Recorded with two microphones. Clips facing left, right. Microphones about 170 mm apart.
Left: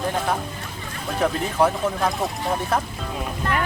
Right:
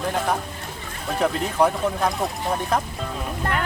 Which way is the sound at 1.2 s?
Centre (ahead or behind).